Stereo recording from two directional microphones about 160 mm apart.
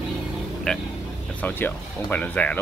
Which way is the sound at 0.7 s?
5° left (ahead or behind).